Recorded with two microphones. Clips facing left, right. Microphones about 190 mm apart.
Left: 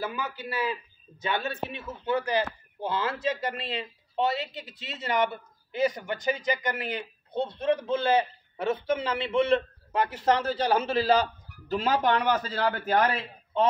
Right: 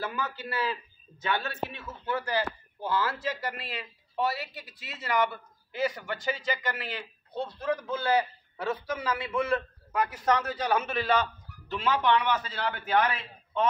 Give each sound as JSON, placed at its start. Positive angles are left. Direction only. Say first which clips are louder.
{"t": 0.0, "sound": "a man's voice", "louder": "left 1 dB", "side_deg": 15}